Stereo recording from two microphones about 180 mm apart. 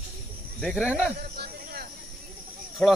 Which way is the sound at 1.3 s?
60° right (ahead or behind).